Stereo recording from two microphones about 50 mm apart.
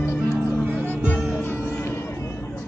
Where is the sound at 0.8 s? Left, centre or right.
Left.